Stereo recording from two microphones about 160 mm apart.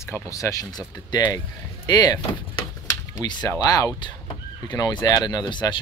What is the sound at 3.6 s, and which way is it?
Speech, 25° left (ahead or behind).